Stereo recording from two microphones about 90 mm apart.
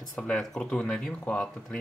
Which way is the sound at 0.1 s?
5° left (ahead or behind).